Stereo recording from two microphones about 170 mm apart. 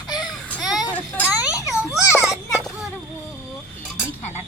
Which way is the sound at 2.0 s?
10° right (ahead or behind).